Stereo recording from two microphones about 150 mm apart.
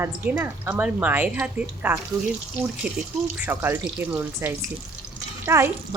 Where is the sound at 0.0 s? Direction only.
10° right (ahead or behind).